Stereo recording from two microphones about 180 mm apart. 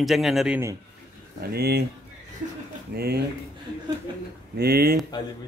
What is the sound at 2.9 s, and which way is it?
Speech, 60° right (ahead or behind).